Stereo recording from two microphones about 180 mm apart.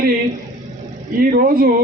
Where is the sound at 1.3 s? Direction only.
55° right (ahead or behind).